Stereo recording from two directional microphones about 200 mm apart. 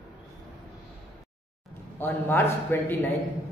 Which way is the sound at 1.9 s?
10° left (ahead or behind).